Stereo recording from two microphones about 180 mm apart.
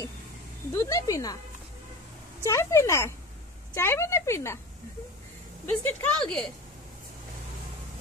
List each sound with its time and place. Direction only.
0.7 s a woman's voice: 15° left (ahead or behind)
2.4 s a woman's voice: 15° left (ahead or behind)
5.7 s speech: 10° left (ahead or behind)